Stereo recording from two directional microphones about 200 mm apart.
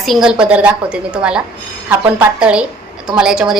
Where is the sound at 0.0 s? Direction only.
Centre (ahead or behind).